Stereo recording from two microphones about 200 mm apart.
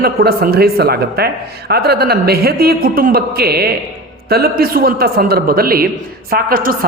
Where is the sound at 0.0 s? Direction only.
50° right (ahead or behind).